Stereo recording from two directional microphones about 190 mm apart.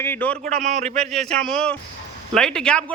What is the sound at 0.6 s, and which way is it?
Speech, 35° right (ahead or behind).